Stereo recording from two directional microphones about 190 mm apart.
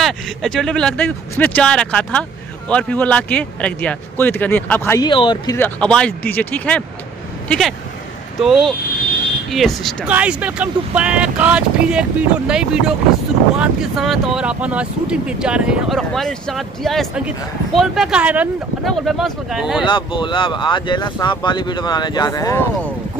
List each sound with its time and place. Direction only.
0.0 s a man's voice: centre (ahead or behind); by 5.6 s 25° left (ahead or behind)
5.6 s a man's voice: 5° left (ahead or behind)
19.8 s speech: 25° left (ahead or behind)